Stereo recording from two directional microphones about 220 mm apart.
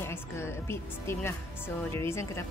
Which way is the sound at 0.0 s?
10° left (ahead or behind).